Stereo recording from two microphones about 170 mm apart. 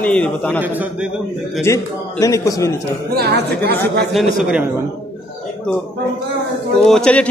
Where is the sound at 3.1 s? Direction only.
70° right (ahead or behind).